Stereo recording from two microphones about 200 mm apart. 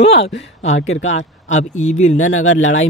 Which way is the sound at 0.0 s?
30° left (ahead or behind).